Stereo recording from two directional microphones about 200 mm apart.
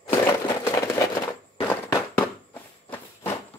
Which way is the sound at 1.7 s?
20° left (ahead or behind).